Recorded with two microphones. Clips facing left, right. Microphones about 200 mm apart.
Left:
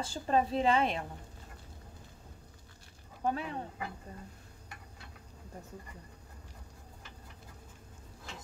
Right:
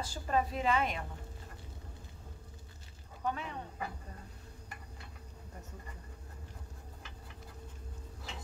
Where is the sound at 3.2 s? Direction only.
35° left (ahead or behind).